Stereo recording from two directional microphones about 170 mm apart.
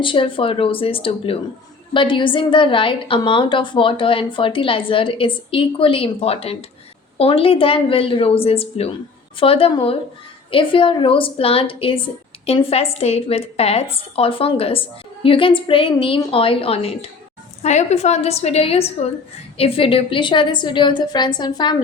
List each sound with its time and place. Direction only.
0.0 s a woman's voice: 30° left (ahead or behind)